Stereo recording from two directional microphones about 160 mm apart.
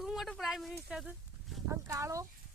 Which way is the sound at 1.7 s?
20° right (ahead or behind).